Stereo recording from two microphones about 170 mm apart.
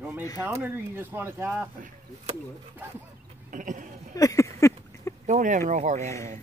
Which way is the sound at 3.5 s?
50° right (ahead or behind).